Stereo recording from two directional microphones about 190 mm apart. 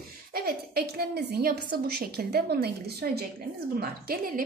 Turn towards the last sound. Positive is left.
turn(degrees=-50)  # may be behind; listen again after turning